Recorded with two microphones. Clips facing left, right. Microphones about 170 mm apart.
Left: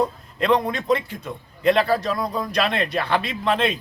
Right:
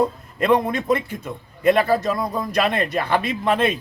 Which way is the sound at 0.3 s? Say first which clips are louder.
Right 2 dB; 5° right (ahead or behind).